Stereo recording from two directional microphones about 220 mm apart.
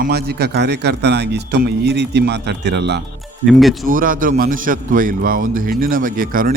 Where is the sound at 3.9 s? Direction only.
40° right (ahead or behind).